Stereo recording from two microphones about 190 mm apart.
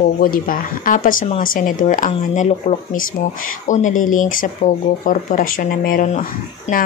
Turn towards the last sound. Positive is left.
turn(degrees=45)  # may be behind; listen again after turning